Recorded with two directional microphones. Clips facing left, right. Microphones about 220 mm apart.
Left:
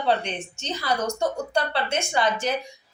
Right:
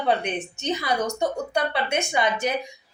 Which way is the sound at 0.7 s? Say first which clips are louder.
Right 2 dB; 15° right (ahead or behind).